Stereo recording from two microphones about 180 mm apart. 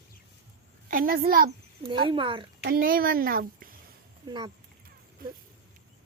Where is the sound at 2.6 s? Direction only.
60° right (ahead or behind).